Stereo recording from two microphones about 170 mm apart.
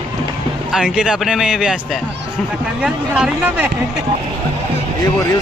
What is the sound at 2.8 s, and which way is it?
Speech, 5° right (ahead or behind).